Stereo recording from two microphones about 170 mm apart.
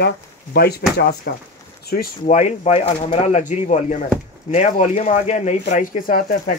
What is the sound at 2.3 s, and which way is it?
Speech, 40° left (ahead or behind).